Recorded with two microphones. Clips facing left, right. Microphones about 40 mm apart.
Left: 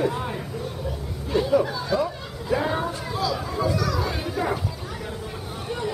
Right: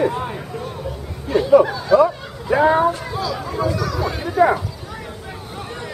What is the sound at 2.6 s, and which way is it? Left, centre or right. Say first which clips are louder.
Speech: right 11 dB; right.